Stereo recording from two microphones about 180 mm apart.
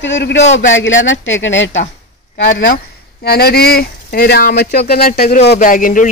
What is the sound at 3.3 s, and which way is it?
Speech, 60° left (ahead or behind).